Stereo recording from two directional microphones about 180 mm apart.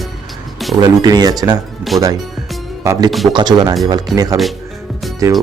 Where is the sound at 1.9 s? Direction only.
Centre (ahead or behind).